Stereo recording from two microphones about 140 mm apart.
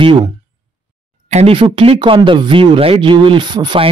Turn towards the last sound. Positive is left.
turn(degrees=-30)  # may be behind; listen again after turning